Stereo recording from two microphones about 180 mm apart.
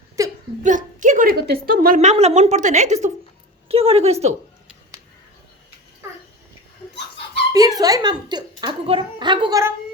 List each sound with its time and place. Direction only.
0.2 s a sound: 15° right (ahead or behind)
0.6 s a woman's voice: 45° right (ahead or behind)
7.8 s a child's voice: 20° right (ahead or behind)